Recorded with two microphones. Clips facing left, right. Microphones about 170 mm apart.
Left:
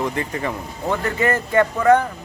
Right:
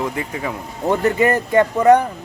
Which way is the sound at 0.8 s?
15° right (ahead or behind).